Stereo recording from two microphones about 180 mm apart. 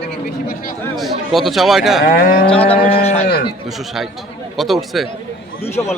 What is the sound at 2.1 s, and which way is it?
Moo, 50° left (ahead or behind).